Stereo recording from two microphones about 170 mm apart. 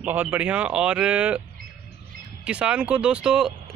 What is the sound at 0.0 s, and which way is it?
Speech, 10° right (ahead or behind).